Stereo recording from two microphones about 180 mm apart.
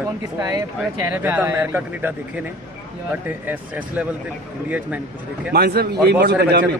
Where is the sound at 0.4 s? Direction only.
20° right (ahead or behind).